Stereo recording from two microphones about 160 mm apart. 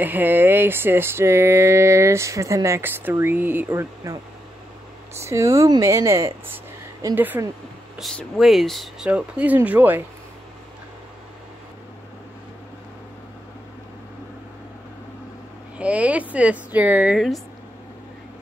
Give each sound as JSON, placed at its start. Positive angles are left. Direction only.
{"t": 0.0, "sound": "speech", "side_deg": -10}
{"t": 5.2, "sound": "speech", "side_deg": -20}
{"t": 8.0, "sound": "speech", "side_deg": 0}
{"t": 15.8, "sound": "speech", "side_deg": -10}